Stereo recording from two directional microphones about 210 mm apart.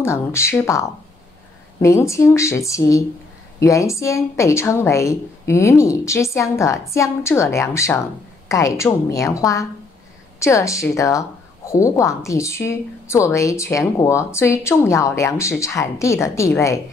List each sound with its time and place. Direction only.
0.0 s a woman's voice: 15° left (ahead or behind)